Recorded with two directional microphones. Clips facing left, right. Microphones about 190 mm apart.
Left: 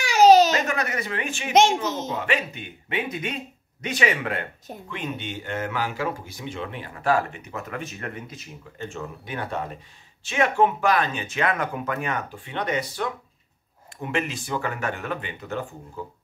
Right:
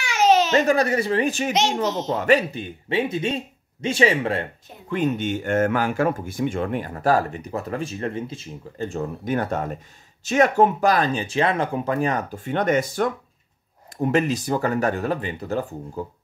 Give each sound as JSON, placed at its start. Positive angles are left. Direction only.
{"t": 0.0, "sound": "a sound", "side_deg": 35}
{"t": 0.6, "sound": "speech", "side_deg": -35}
{"t": 1.5, "sound": "a child's voice", "side_deg": 50}
{"t": 2.0, "sound": "speech", "side_deg": -40}
{"t": 4.8, "sound": "speech", "side_deg": -45}